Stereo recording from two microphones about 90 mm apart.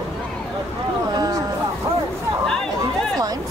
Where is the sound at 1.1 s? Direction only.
45° right (ahead or behind).